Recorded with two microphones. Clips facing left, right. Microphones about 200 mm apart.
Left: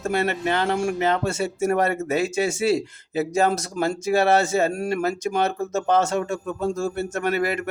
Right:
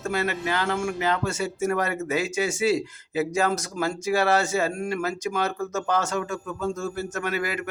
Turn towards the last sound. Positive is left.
turn(degrees=30)  # may be behind; listen again after turning